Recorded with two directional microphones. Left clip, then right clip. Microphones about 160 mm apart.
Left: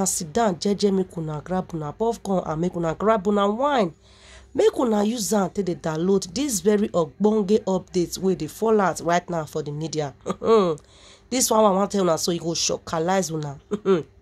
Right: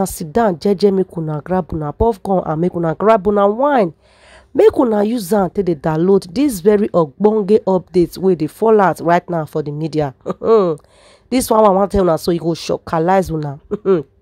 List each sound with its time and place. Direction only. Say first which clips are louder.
0.0 s speech: right 7 dB; 45° right (ahead or behind)
3.3 s speech: right 8 dB; 30° right (ahead or behind)
3.6 s speech: right 8 dB; 45° right (ahead or behind)
10.4 s speech: right 6 dB; 30° right (ahead or behind)
11.2 s speech: right 7 dB; 45° right (ahead or behind)